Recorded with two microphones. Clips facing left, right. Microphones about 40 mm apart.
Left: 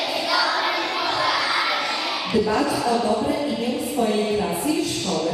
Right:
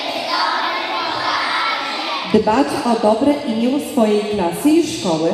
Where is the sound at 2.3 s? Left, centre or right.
Right.